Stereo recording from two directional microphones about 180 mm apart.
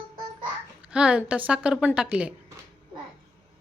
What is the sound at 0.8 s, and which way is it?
A woman's voice, 5° right (ahead or behind).